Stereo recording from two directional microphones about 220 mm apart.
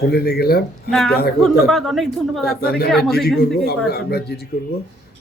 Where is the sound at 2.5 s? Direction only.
45° left (ahead or behind).